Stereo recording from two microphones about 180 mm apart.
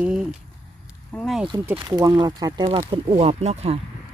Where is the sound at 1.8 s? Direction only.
25° right (ahead or behind).